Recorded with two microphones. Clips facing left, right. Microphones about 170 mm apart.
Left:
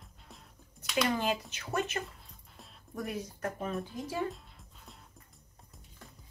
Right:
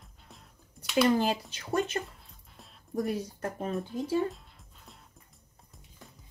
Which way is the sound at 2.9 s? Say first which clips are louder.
Right 6 dB; 35° right (ahead or behind).